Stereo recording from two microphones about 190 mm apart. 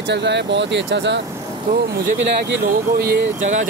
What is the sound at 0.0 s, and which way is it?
Speech, 65° right (ahead or behind).